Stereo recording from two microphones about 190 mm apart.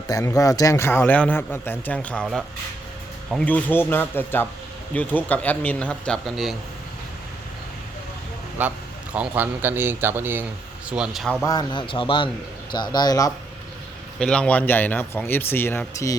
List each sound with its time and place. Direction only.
0.1 s a man's voice: 20° left (ahead or behind); by 6.6 s centre (ahead or behind)
8.6 s speech: 10° right (ahead or behind)
11.4 s a man's voice: 20° left (ahead or behind)
14.2 s a man's voice: 5° left (ahead or behind)